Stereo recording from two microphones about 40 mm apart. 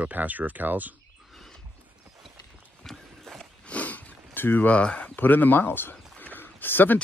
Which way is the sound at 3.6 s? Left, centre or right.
Left.